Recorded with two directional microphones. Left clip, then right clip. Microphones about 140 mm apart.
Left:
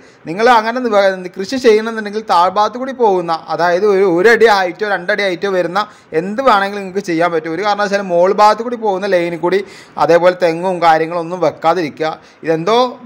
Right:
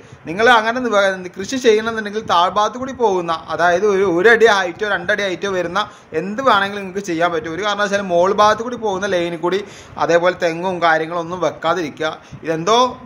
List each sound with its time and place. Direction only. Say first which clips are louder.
0.3 s speech: left 2 dB; 25° left (ahead or behind)